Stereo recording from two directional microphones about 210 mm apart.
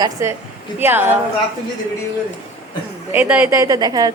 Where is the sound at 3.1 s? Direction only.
10° right (ahead or behind).